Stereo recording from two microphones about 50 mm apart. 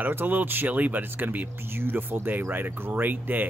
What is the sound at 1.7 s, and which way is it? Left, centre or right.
Speech, right.